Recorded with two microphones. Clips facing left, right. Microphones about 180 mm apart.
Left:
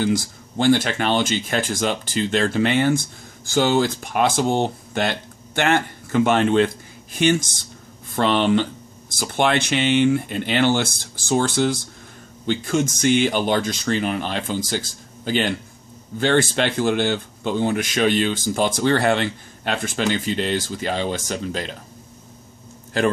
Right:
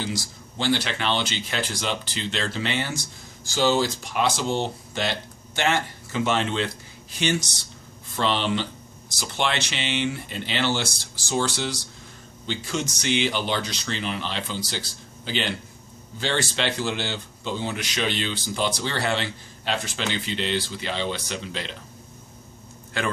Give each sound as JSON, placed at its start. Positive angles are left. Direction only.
{"t": 0.0, "sound": "speech", "side_deg": 55}